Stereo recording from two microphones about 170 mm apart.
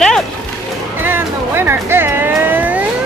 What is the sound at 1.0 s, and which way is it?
Speech, 15° right (ahead or behind).